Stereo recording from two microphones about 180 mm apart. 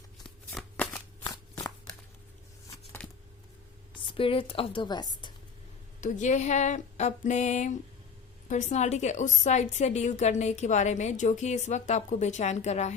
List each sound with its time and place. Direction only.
0.5 s shuffling cards: 5° left (ahead or behind)
1.2 s shuffling cards: 20° left (ahead or behind)
3.0 s a sound: 5° left (ahead or behind)
4.2 s speech: 30° left (ahead or behind)
6.0 s a woman's voice: 40° left (ahead or behind)